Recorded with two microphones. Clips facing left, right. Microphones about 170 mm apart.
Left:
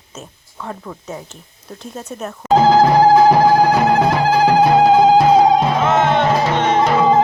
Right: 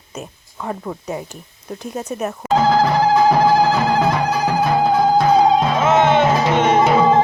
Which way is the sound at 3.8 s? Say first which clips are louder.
Left 3 dB; 70° left (ahead or behind).